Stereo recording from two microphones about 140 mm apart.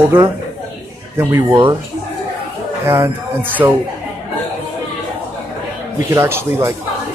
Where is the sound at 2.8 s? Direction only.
15° right (ahead or behind).